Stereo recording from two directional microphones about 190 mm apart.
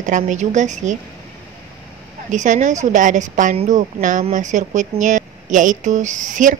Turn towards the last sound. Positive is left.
turn(degrees=-40)  # may be behind; listen again after turning